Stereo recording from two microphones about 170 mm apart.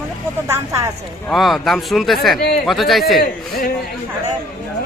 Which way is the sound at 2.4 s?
65° left (ahead or behind).